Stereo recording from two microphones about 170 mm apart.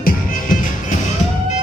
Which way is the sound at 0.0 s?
55° left (ahead or behind).